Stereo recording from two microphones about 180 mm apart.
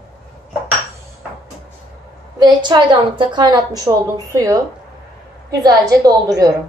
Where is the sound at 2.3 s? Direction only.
25° right (ahead or behind).